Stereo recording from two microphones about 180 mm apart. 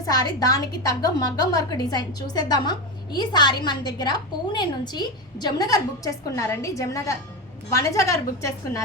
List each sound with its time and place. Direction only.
0.1 s a woman's voice: 20° left (ahead or behind)